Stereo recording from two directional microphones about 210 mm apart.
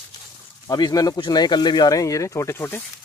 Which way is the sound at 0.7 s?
20° left (ahead or behind).